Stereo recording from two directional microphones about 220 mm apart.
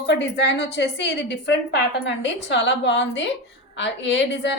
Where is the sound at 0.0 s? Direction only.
50° left (ahead or behind).